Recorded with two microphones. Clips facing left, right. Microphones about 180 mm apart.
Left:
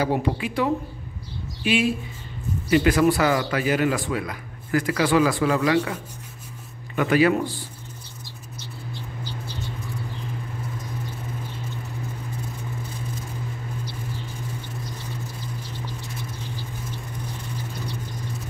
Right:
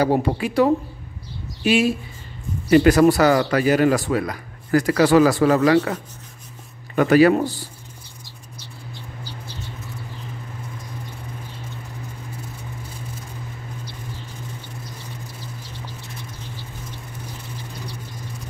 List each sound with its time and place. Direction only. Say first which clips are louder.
0.0 s a woman's voice: right 4 dB; 40° right (ahead or behind)
7.0 s a woman's voice: right 5 dB; 40° right (ahead or behind)